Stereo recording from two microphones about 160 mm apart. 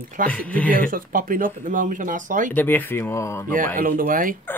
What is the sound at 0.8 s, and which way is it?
Speech, 60° right (ahead or behind).